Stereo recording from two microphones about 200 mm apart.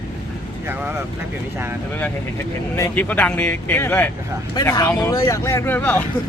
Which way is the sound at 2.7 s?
10° left (ahead or behind).